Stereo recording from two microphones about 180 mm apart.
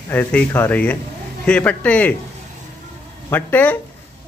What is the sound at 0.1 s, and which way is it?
A man's voice, 10° left (ahead or behind).